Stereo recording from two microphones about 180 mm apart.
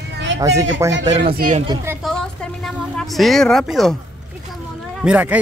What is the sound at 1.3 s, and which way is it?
Speech, 55° right (ahead or behind).